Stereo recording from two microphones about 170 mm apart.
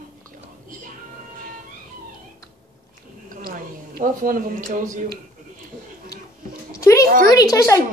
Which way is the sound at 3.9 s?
55° right (ahead or behind).